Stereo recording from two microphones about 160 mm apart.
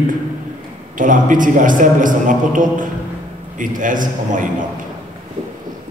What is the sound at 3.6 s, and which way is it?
Speech, 55° right (ahead or behind).